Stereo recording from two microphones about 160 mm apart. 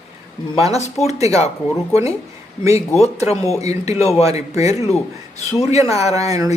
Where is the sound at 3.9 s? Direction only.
40° left (ahead or behind).